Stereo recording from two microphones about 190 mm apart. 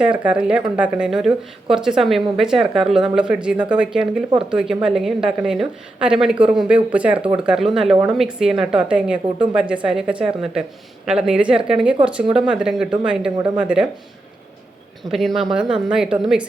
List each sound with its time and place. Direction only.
0.0 s a woman's voice: 5° right (ahead or behind)
13.3 s speech: 20° right (ahead or behind)
15.4 s a woman's voice: 5° right (ahead or behind)